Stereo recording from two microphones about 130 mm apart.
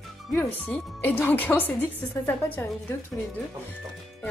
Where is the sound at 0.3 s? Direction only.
15° left (ahead or behind).